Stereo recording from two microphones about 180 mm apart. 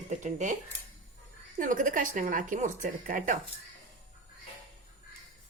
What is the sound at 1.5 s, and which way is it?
Speech, 50° right (ahead or behind).